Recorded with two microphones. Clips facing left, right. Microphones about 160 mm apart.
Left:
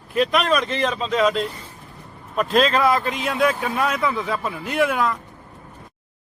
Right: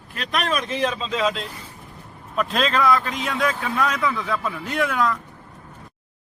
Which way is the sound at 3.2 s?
20° left (ahead or behind).